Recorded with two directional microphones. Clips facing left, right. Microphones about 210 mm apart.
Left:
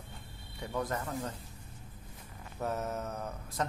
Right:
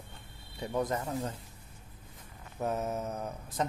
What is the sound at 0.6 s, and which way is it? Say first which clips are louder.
Speech: right 3 dB; 20° right (ahead or behind).